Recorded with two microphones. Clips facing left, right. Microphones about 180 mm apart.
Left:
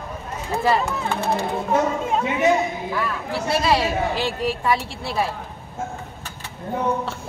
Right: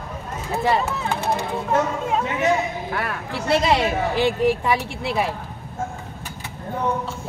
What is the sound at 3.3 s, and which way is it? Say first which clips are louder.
Speech: right 2 dB; 20° right (ahead or behind).